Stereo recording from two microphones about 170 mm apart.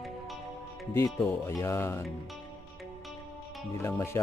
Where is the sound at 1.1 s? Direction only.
15° left (ahead or behind).